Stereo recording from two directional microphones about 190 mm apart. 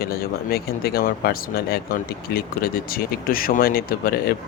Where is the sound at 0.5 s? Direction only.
55° left (ahead or behind).